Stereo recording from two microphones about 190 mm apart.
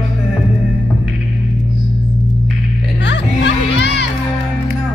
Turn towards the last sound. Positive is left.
turn(degrees=65)  # may be behind; listen again after turning